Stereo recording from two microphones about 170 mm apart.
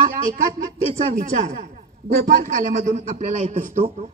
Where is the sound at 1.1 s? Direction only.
50° right (ahead or behind).